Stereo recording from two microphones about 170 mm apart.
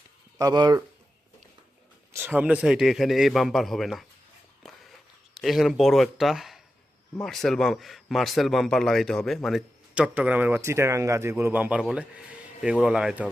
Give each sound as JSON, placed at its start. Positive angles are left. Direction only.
{"t": 0.3, "sound": "speech", "side_deg": -25}
{"t": 2.1, "sound": "a man's voice", "side_deg": -10}
{"t": 5.4, "sound": "a man's voice", "side_deg": 0}